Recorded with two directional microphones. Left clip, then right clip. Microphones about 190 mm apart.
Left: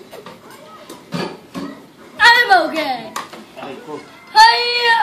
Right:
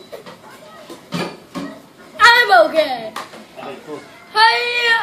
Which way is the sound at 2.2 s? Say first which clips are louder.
Right 1 dB; 10° right (ahead or behind).